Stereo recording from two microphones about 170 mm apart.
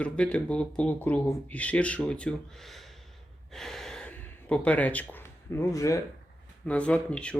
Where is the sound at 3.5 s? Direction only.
Centre (ahead or behind); by 6.0 s 20° left (ahead or behind).